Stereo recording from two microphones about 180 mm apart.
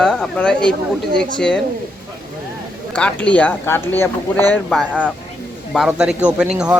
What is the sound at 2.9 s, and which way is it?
A man's voice, 5° left (ahead or behind).